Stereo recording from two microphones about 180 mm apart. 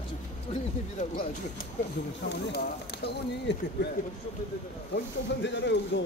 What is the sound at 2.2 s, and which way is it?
Speech, 70° left (ahead or behind).